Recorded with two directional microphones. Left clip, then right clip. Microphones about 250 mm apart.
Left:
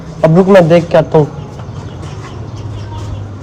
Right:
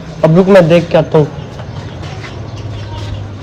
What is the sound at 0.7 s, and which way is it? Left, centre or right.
Speech, right.